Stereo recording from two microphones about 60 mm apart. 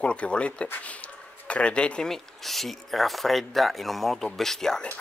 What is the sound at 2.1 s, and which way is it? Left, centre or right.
Speech, centre.